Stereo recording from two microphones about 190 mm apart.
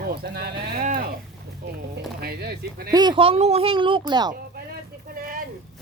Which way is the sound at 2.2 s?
55° right (ahead or behind).